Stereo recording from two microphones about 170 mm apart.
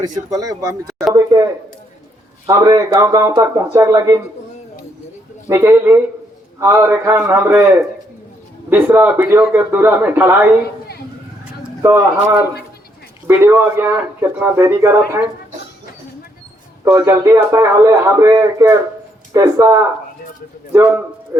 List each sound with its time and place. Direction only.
0.0 s speech: 20° right (ahead or behind)
2.5 s speech: 20° right (ahead or behind)
5.5 s a man's voice: 15° right (ahead or behind)
11.8 s a man's voice: 15° right (ahead or behind)
13.2 s a man's voice: 10° right (ahead or behind)
16.8 s a man's voice: 15° right (ahead or behind)